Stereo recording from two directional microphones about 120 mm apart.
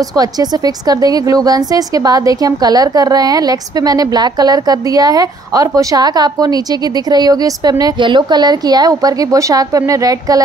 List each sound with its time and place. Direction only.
0.1 s a woman's voice: 30° right (ahead or behind)